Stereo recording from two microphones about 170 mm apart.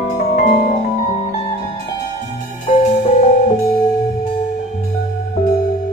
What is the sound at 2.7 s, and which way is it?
Music, 35° left (ahead or behind).